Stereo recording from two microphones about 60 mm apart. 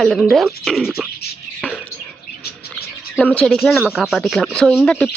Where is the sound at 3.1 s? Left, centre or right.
Left.